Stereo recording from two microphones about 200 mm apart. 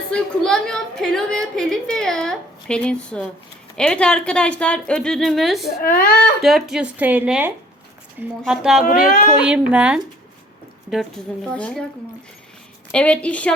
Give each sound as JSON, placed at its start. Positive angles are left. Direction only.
{"t": 0.1, "sound": "a woman's voice", "side_deg": 5}
{"t": 5.8, "sound": "speech", "side_deg": 50}
{"t": 6.4, "sound": "a woman's voice", "side_deg": 0}
{"t": 8.8, "sound": "speech", "side_deg": 45}
{"t": 9.4, "sound": "a woman's voice", "side_deg": -5}
{"t": 11.5, "sound": "a woman's voice", "side_deg": 5}
{"t": 12.9, "sound": "a woman's voice", "side_deg": 5}